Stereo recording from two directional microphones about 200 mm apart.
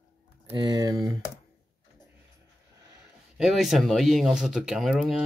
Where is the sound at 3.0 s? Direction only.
5° right (ahead or behind).